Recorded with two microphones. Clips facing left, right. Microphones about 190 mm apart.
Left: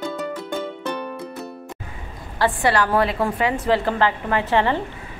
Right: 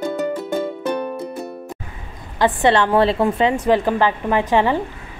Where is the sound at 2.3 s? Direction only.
20° right (ahead or behind).